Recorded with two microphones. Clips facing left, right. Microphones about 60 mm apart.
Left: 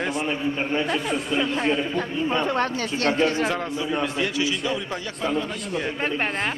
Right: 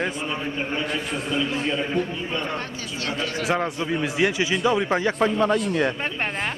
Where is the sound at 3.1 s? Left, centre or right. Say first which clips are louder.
Left 6 dB; left.